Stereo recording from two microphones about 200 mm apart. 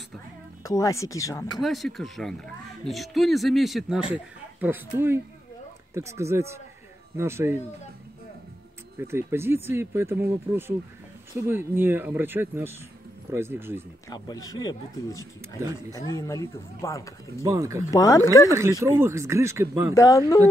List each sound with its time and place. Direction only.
0.7 s speech: 15° left (ahead or behind)
1.6 s speech: centre (ahead or behind)
9.0 s speech: 10° right (ahead or behind)
14.1 s speech: 20° left (ahead or behind)
17.4 s speech: 15° right (ahead or behind)
17.9 s speech: 15° left (ahead or behind)
18.5 s speech: 15° right (ahead or behind)
19.9 s speech: 15° left (ahead or behind)